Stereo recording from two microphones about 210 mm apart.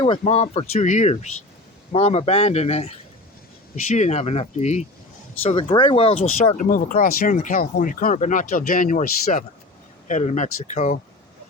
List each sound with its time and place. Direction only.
0.0 s speech: 30° left (ahead or behind)
6.6 s speech: 40° left (ahead or behind)